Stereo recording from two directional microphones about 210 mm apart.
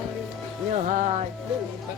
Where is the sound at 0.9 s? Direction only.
35° right (ahead or behind).